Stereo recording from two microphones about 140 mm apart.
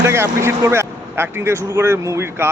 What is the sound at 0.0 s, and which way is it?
A man's voice, 20° right (ahead or behind).